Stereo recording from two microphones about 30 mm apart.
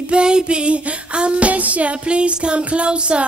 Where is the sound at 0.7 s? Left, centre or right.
Right.